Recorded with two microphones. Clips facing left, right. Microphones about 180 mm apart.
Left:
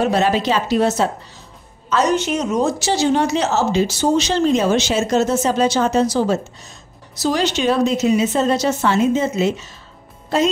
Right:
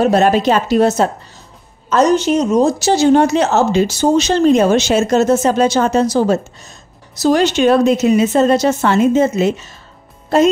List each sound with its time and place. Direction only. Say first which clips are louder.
0.0 s speech: right 5 dB; 50° right (ahead or behind)
2.1 s speech: right 6 dB; 35° right (ahead or behind); by 9.7 s 55° right (ahead or behind)